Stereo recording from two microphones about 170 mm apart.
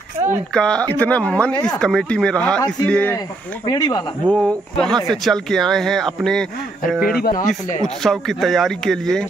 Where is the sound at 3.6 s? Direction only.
25° left (ahead or behind).